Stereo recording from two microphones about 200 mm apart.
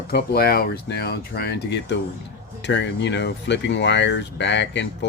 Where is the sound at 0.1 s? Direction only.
50° left (ahead or behind).